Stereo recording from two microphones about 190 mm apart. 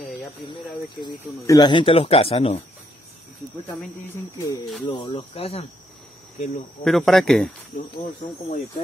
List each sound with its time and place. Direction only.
0.9 s speech: 20° left (ahead or behind)
4.8 s speech: 30° left (ahead or behind)
6.8 s speech: centre (ahead or behind)
7.7 s speech: 45° left (ahead or behind)